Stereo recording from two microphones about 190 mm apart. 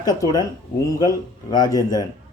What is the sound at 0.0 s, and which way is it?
Speech, 20° left (ahead or behind).